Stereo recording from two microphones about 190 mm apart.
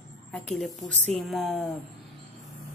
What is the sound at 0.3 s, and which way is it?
A woman's voice, 5° left (ahead or behind).